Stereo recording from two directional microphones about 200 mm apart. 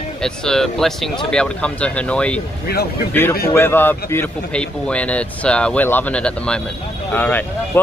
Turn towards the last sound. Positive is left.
turn(degrees=10)  # may be behind; listen again after turning